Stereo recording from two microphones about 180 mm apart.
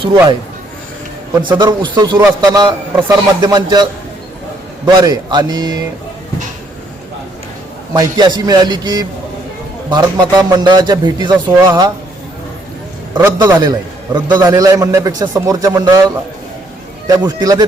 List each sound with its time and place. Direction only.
0.0 s speech: 30° right (ahead or behind)
1.4 s a man's voice: 25° right (ahead or behind)
4.9 s a man's voice: 25° right (ahead or behind)
7.9 s a man's voice: 20° right (ahead or behind)
13.1 s a man's voice: 20° right (ahead or behind)
17.2 s a man's voice: 20° right (ahead or behind)